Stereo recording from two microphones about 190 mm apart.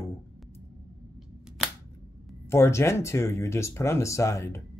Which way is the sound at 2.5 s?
15° left (ahead or behind).